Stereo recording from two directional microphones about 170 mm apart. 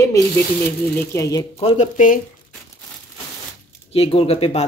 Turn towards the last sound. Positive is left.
turn(degrees=35)  # may be behind; listen again after turning